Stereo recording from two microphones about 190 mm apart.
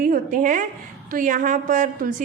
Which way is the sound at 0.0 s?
45° right (ahead or behind).